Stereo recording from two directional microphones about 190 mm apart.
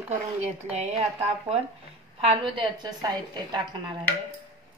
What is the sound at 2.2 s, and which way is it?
A woman's voice, 25° right (ahead or behind).